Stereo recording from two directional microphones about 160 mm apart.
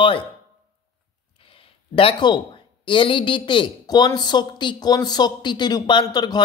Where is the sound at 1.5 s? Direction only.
35° left (ahead or behind).